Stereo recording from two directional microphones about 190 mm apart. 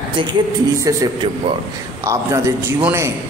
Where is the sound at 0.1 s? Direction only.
25° right (ahead or behind).